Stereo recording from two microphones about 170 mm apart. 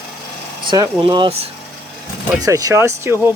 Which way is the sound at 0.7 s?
30° right (ahead or behind).